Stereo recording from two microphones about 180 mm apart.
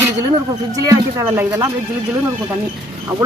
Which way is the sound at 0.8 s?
20° right (ahead or behind).